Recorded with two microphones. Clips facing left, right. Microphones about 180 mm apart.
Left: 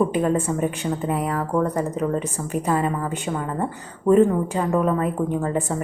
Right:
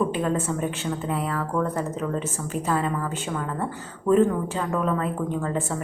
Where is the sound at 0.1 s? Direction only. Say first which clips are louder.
Left 4 dB; 15° left (ahead or behind).